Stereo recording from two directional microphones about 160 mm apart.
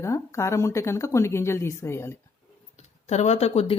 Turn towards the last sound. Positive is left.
turn(degrees=40)  # may be behind; listen again after turning